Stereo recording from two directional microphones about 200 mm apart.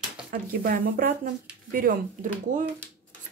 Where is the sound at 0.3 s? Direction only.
45° right (ahead or behind).